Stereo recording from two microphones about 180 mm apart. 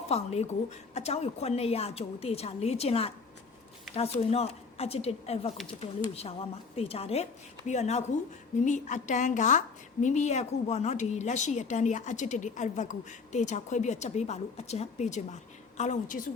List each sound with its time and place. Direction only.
0.1 s a woman's voice: 35° left (ahead or behind)